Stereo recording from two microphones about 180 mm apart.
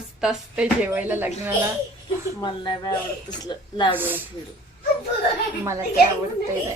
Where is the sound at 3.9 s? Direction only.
10° right (ahead or behind).